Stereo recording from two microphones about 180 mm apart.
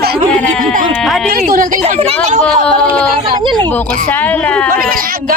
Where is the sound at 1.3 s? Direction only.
55° right (ahead or behind).